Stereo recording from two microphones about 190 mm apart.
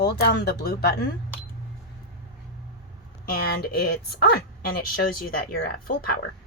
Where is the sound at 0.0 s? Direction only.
60° left (ahead or behind).